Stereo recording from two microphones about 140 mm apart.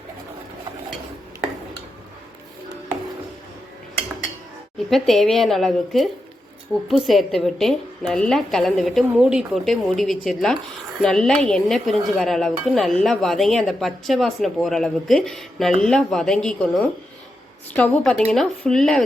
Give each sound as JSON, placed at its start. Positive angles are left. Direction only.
{"t": 4.9, "sound": "a woman's voice", "side_deg": 0}